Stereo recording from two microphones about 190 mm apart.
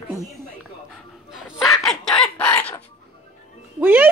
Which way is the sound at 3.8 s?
10° right (ahead or behind).